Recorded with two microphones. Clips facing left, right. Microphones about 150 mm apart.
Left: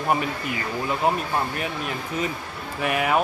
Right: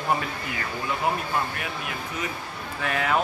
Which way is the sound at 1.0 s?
25° left (ahead or behind).